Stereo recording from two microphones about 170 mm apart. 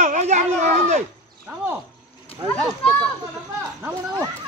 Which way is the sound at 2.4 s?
5° left (ahead or behind).